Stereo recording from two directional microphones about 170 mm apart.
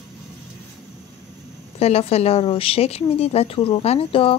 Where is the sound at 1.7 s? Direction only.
35° left (ahead or behind).